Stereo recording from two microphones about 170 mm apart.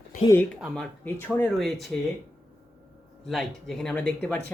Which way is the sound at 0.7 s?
10° left (ahead or behind).